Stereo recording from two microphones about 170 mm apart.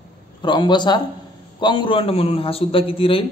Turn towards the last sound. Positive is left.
turn(degrees=35)  # may be behind; listen again after turning